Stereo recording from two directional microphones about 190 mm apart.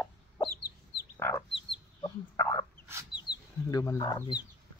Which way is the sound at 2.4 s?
15° left (ahead or behind).